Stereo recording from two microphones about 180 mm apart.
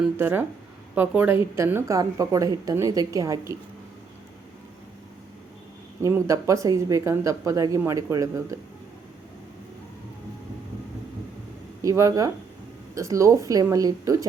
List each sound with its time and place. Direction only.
0.2 s a woman's voice: 10° right (ahead or behind)
6.0 s a woman's voice: 15° right (ahead or behind)
11.8 s a woman's voice: 20° right (ahead or behind)